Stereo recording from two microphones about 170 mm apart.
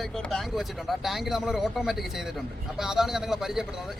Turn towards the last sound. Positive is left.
turn(degrees=-5)  # may be behind; listen again after turning